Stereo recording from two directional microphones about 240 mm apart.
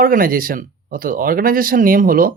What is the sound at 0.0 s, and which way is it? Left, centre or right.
Speech, right.